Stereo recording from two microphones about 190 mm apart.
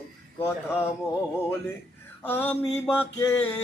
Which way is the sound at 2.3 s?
10° left (ahead or behind).